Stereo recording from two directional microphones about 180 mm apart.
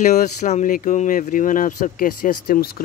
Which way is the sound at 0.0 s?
45° left (ahead or behind).